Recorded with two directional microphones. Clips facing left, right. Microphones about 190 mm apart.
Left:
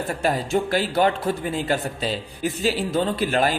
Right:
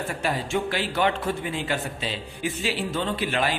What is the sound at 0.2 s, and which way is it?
Speech, 40° left (ahead or behind).